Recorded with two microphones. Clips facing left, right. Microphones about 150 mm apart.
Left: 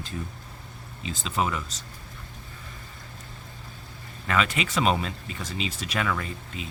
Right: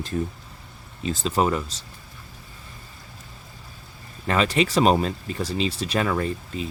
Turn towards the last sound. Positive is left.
turn(degrees=-35)  # may be behind; listen again after turning